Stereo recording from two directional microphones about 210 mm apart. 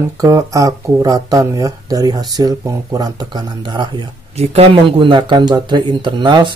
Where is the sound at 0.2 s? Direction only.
15° right (ahead or behind).